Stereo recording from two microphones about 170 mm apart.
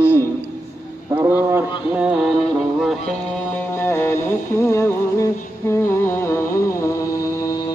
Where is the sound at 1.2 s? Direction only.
15° right (ahead or behind).